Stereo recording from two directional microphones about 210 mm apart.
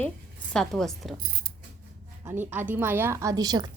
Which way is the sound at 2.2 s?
10° right (ahead or behind).